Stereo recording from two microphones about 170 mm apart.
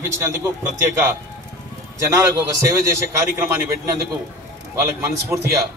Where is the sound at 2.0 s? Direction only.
15° right (ahead or behind).